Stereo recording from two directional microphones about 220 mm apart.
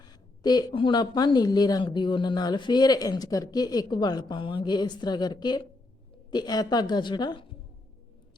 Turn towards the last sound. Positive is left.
turn(degrees=20)  # may be behind; listen again after turning